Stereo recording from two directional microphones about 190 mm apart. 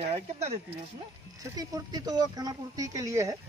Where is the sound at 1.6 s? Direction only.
20° right (ahead or behind).